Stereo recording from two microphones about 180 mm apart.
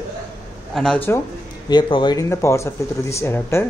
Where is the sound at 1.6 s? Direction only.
25° left (ahead or behind).